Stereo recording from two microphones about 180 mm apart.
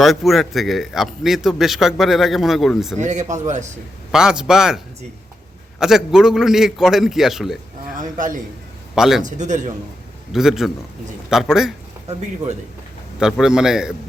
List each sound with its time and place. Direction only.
0.0 s a man's voice: centre (ahead or behind)
3.0 s speech: 40° right (ahead or behind)
4.1 s a man's voice: 5° right (ahead or behind)
5.8 s a man's voice: 5° right (ahead or behind)
7.9 s a man's voice: 45° right (ahead or behind)
9.0 s a man's voice: centre (ahead or behind)
9.2 s a man's voice: 40° right (ahead or behind)
10.3 s a man's voice: centre (ahead or behind)
13.1 s a man's voice: 5° right (ahead or behind)